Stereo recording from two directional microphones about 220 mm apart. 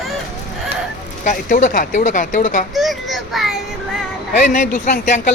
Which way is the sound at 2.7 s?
Centre (ahead or behind).